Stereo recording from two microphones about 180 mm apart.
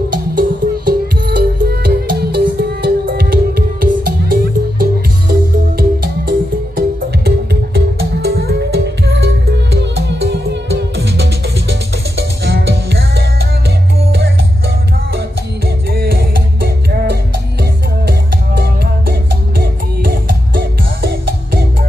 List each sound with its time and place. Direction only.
0.4 s music: 50° right (ahead or behind); by 11.2 s 70° right (ahead or behind)
12.4 s music: 65° right (ahead or behind)
15.9 s music: 55° right (ahead or behind)
19.6 s music: 55° right (ahead or behind)